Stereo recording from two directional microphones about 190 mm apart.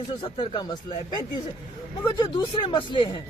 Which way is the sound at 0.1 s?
25° left (ahead or behind).